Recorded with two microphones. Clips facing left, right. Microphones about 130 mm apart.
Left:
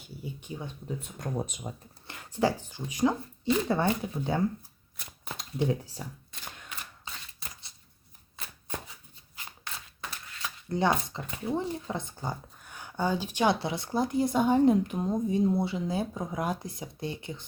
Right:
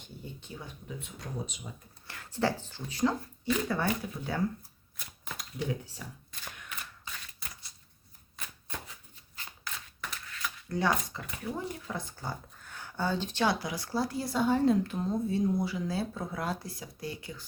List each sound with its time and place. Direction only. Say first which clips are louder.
0.0 s speech: left 4 dB; 10° left (ahead or behind)
0.9 s speech: left 7 dB; 40° left (ahead or behind)
2.0 s speech: left 3 dB; 20° left (ahead or behind)
6.6 s mechanisms: left 1 dB; 25° left (ahead or behind)
10.7 s speech: left 3 dB; 20° left (ahead or behind)